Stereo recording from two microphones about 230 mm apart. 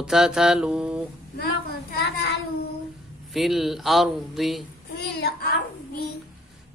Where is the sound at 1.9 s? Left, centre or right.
Left.